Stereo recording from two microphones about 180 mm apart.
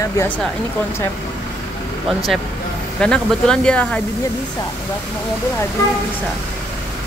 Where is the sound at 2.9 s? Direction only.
5° left (ahead or behind).